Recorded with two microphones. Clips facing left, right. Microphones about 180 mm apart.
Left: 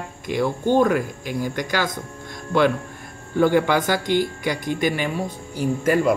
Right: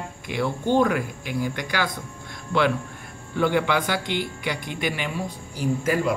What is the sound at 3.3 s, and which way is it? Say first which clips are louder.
Speech: left 4 dB; 45° left (ahead or behind).